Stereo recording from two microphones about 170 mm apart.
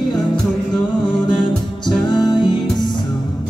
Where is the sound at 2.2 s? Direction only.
25° left (ahead or behind).